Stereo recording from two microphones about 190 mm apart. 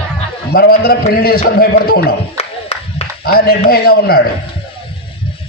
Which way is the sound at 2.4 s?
35° left (ahead or behind).